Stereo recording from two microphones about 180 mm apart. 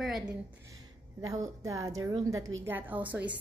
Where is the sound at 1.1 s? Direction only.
20° right (ahead or behind).